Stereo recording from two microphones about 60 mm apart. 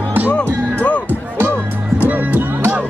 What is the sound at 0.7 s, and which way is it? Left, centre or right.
Music, left.